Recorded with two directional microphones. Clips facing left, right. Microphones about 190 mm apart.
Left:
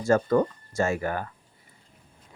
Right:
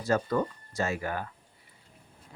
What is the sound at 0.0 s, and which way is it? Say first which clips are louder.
Speech: left 6 dB; 50° left (ahead or behind).